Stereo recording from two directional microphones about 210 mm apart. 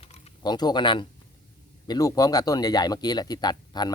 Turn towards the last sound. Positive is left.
turn(degrees=20)  # may be behind; listen again after turning